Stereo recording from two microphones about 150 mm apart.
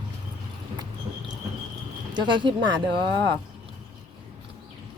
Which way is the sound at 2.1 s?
30° right (ahead or behind).